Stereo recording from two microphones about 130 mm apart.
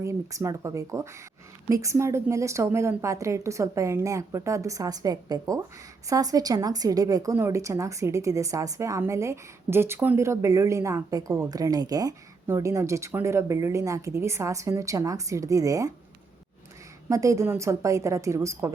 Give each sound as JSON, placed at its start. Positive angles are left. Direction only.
{"t": 0.0, "sound": "a woman's voice", "side_deg": -25}
{"t": 17.1, "sound": "a woman's voice", "side_deg": -25}